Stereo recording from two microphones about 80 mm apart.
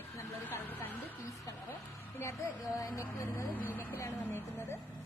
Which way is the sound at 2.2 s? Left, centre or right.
Left.